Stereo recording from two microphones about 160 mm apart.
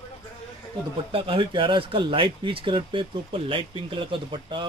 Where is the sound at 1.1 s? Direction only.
35° right (ahead or behind).